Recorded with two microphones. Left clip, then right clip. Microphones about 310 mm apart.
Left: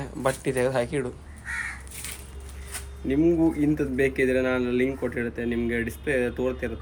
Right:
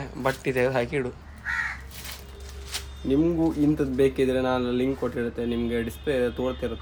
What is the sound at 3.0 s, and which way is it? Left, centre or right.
Speech, centre.